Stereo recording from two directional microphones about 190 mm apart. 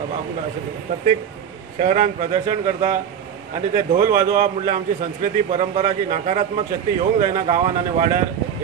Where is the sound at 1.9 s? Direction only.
40° right (ahead or behind).